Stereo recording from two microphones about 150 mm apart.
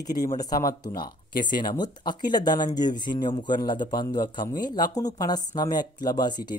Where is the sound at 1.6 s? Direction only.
30° left (ahead or behind).